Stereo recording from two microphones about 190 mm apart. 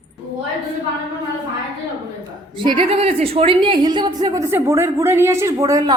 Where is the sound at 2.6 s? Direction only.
25° right (ahead or behind).